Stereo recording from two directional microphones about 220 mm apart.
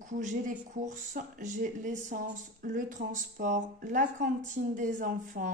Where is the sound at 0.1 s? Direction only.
35° right (ahead or behind).